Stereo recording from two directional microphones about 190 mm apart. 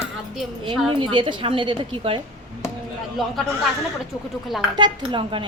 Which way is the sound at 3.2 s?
Centre (ahead or behind).